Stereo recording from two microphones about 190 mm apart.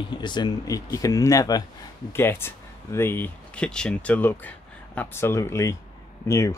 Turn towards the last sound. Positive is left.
turn(degrees=15)  # may be behind; listen again after turning